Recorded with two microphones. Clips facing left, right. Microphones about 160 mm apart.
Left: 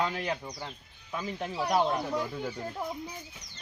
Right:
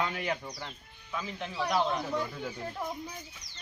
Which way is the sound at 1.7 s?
40° left (ahead or behind).